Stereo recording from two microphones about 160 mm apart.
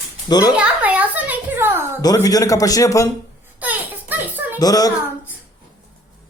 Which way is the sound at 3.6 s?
10° right (ahead or behind).